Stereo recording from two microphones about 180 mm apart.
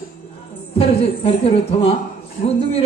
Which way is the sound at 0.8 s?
30° left (ahead or behind).